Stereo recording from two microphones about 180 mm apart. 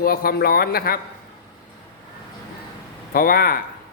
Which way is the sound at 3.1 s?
55° left (ahead or behind).